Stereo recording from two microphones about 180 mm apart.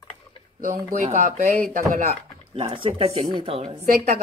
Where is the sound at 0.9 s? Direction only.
45° right (ahead or behind).